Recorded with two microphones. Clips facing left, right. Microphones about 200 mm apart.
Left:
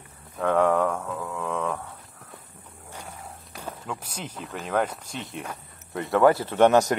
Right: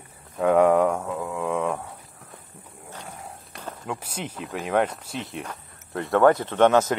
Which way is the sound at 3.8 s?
10° right (ahead or behind).